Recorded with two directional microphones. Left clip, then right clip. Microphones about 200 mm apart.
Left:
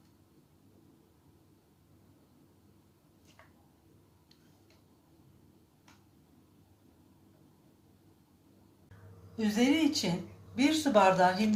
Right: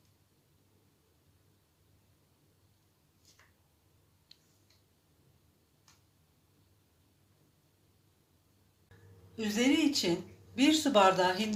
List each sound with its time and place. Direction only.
9.4 s speech: 20° right (ahead or behind)